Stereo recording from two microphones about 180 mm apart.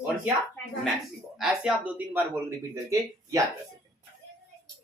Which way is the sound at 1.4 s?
5° right (ahead or behind).